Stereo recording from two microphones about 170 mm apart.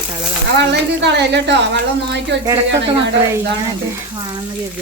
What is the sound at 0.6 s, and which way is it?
A woman's voice, 90° right.